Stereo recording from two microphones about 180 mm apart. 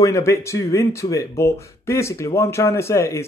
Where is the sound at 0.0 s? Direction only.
15° left (ahead or behind).